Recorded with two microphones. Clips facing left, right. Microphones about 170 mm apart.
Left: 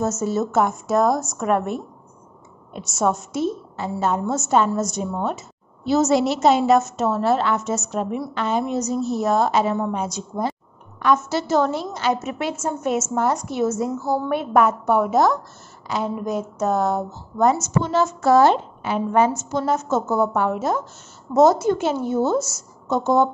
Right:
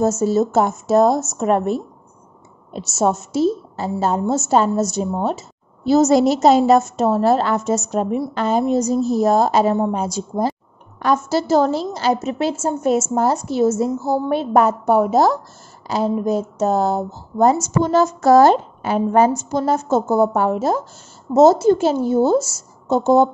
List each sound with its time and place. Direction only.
0.2 s a woman's voice: 30° right (ahead or behind)